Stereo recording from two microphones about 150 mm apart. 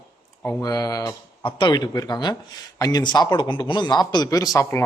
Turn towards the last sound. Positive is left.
turn(degrees=20)  # may be behind; listen again after turning